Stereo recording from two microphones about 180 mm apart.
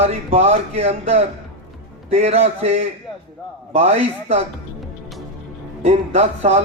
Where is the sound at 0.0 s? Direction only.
35° right (ahead or behind).